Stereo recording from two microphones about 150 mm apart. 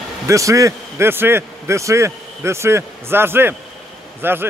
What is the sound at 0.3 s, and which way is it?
A man's voice, 20° right (ahead or behind).